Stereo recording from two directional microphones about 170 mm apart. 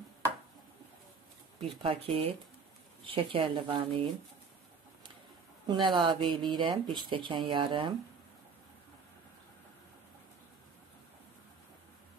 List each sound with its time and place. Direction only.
1.8 s speech: 30° right (ahead or behind)
5.7 s speech: 30° right (ahead or behind)